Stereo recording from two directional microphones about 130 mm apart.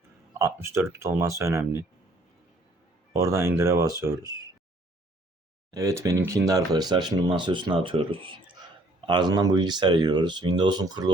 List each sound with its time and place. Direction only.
0.3 s speech: 20° right (ahead or behind)
3.1 s speech: 20° right (ahead or behind)
5.7 s speech: 25° right (ahead or behind)